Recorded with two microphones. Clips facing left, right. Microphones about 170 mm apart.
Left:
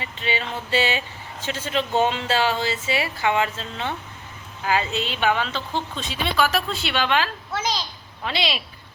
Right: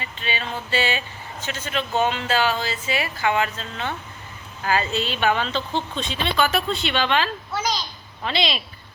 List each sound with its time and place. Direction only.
0.0 s a woman's voice: 25° left (ahead or behind)
4.6 s a woman's voice: 15° left (ahead or behind)